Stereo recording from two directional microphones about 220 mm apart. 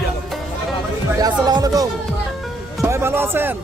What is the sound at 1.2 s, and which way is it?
Speech, 20° right (ahead or behind).